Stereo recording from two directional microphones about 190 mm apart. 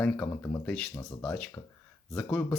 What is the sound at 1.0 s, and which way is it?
Speech, 20° left (ahead or behind).